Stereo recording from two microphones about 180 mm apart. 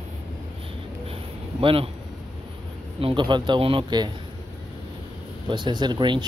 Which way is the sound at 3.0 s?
25° right (ahead or behind).